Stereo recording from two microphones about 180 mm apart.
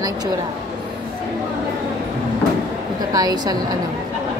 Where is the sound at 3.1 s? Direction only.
20° right (ahead or behind).